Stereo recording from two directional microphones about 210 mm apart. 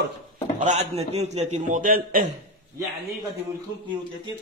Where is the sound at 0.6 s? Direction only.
30° right (ahead or behind).